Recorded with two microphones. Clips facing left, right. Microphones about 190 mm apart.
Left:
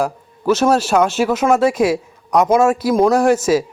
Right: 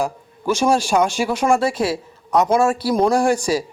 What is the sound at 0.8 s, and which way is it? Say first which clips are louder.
Speech: left 3 dB; 5° left (ahead or behind).